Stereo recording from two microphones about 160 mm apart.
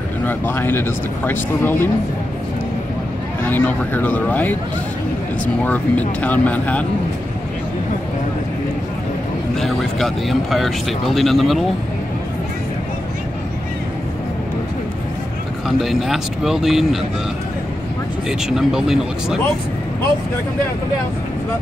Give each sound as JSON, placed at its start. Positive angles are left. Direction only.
{"t": 0.2, "sound": "speech", "side_deg": 10}
{"t": 3.4, "sound": "speech", "side_deg": 10}
{"t": 5.7, "sound": "speech", "side_deg": 10}
{"t": 9.6, "sound": "speech", "side_deg": 0}
{"t": 15.8, "sound": "speech", "side_deg": 0}
{"t": 18.5, "sound": "speech", "side_deg": -5}